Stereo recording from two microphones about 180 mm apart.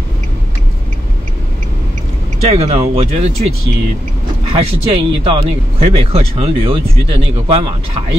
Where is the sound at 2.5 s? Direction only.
35° right (ahead or behind).